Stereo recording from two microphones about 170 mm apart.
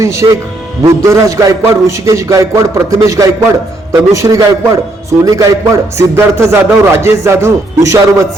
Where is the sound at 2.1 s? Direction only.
15° right (ahead or behind).